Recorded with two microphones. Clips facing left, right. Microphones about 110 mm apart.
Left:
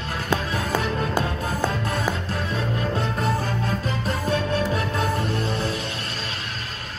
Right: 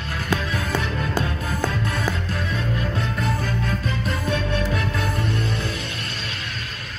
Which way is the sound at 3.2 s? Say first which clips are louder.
Left 1 dB; 35° left (ahead or behind).